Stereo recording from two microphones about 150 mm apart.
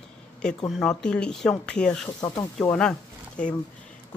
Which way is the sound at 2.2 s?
20° left (ahead or behind).